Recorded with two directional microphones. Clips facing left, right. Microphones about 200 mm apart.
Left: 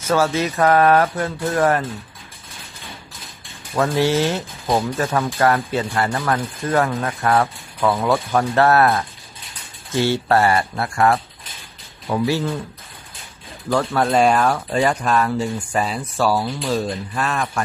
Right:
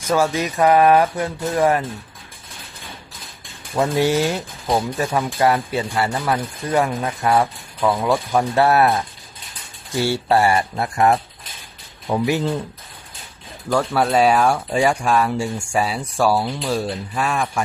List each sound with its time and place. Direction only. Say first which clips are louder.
0.0 s speech: left 1 dB; 15° right (ahead or behind)
3.7 s speech: even; 15° right (ahead or behind)
13.7 s speech: even; 10° right (ahead or behind)